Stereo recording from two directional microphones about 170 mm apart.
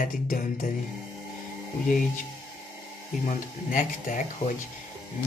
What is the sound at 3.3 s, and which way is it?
Speech, 50° left (ahead or behind).